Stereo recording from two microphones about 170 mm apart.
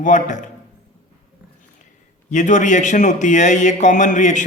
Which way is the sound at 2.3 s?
45° left (ahead or behind).